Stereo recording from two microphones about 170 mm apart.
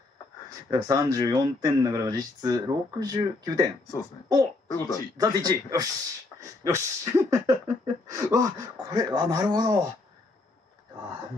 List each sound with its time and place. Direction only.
0.7 s speech: 20° right (ahead or behind)
4.7 s speech: 20° left (ahead or behind)
5.1 s speech: 25° right (ahead or behind)